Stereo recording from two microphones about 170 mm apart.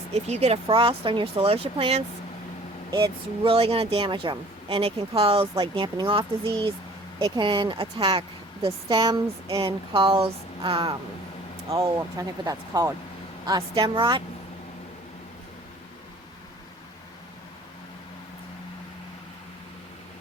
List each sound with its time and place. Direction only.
0.1 s speech: 40° right (ahead or behind)
11.7 s speech: 20° right (ahead or behind)